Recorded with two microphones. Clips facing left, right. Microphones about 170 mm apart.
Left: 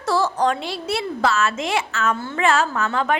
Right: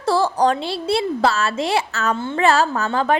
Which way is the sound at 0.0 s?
30° right (ahead or behind).